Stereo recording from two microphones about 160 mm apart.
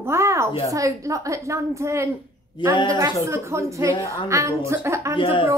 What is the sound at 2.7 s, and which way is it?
Speech, 30° left (ahead or behind).